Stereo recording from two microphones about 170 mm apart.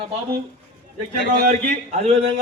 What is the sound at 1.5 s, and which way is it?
Speech, 40° right (ahead or behind).